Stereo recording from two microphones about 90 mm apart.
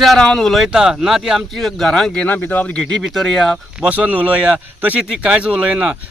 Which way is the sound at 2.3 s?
20° left (ahead or behind).